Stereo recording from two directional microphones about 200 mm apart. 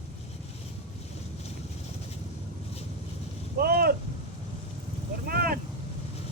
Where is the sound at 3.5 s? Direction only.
50° right (ahead or behind).